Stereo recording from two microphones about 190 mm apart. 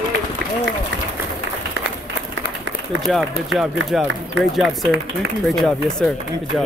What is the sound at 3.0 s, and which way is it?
Speech, centre (ahead or behind).